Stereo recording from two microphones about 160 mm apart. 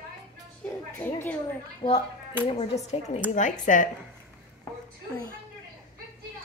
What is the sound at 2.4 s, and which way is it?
Speech, 40° left (ahead or behind).